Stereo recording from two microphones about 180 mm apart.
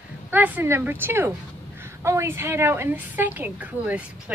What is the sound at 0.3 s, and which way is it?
A woman's voice, 10° right (ahead or behind).